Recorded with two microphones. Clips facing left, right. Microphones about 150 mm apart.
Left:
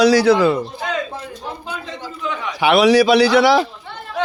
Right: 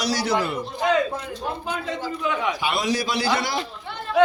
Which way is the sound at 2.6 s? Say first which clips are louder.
Left 12 dB; 70° left (ahead or behind).